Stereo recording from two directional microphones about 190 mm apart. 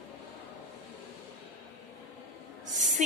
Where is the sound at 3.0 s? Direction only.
40° right (ahead or behind).